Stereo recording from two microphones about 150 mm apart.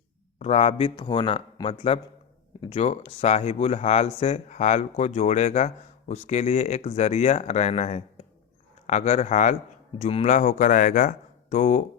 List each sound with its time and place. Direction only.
0.3 s speech: 45° left (ahead or behind)
10.0 s speech: 45° left (ahead or behind)